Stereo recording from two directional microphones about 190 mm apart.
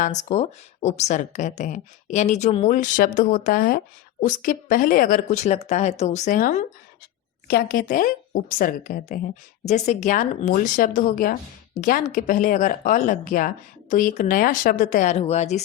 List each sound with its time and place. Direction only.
0.0 s a woman's voice: 40° left (ahead or behind)
9.6 s a woman's voice: 35° left (ahead or behind)